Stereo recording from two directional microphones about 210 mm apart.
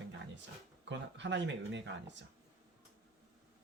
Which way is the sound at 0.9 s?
60° right (ahead or behind).